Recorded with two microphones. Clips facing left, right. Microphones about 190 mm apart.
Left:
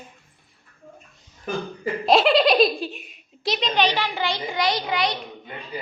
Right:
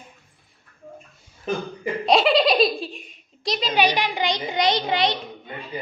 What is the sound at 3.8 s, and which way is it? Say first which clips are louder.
A child's voice: right 3 dB; 15° right (ahead or behind).